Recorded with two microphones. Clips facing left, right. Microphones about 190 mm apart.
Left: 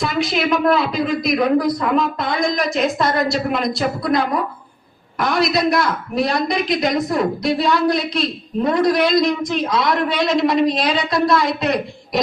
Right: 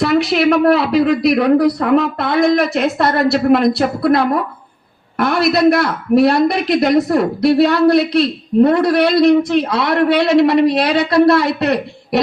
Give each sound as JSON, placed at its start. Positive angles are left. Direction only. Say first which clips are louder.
{"t": 0.0, "sound": "a woman's voice", "louder": "right 7 dB", "side_deg": -65}